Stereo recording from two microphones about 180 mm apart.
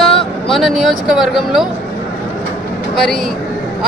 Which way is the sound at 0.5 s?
Centre (ahead or behind).